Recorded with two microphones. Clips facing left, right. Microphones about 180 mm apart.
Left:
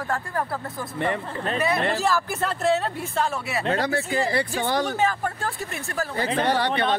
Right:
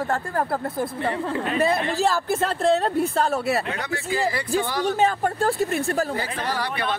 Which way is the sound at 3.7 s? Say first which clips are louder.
Left 3 dB; 35° left (ahead or behind).